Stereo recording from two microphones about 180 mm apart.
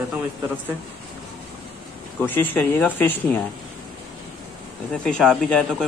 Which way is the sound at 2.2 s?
10° left (ahead or behind).